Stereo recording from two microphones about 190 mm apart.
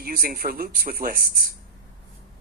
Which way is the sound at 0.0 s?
50° right (ahead or behind).